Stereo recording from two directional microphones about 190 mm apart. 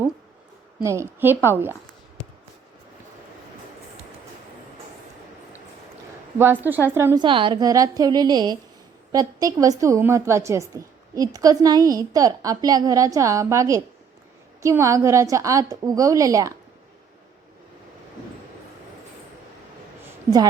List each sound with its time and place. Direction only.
0.8 s a woman's voice: 15° right (ahead or behind)
6.4 s a woman's voice: 10° right (ahead or behind)
7.2 s a woman's voice: 25° right (ahead or behind)